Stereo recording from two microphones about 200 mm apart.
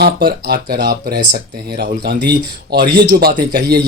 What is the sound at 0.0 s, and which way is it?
Speech, 50° right (ahead or behind).